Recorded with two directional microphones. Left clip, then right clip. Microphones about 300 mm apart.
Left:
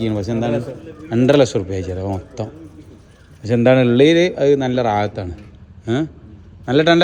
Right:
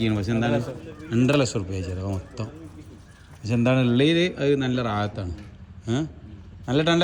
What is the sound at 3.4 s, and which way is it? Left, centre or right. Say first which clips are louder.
Speech: left 10 dB; centre.